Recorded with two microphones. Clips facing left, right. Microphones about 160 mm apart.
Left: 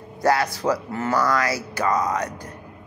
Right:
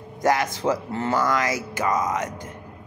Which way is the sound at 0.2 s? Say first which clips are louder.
Left 1 dB; 20° right (ahead or behind).